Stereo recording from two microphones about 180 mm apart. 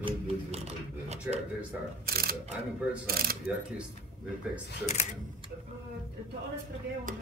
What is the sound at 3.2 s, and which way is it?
Coin, 60° right (ahead or behind).